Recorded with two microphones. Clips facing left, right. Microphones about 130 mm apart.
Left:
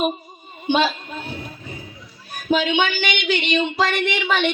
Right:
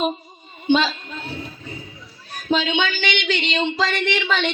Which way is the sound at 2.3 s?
10° left (ahead or behind).